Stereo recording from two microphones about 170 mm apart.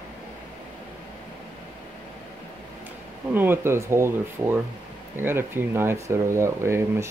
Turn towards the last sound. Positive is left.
turn(degrees=-15)  # may be behind; listen again after turning